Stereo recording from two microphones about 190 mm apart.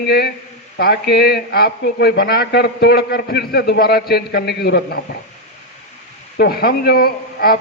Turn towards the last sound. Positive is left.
turn(degrees=50)  # may be behind; listen again after turning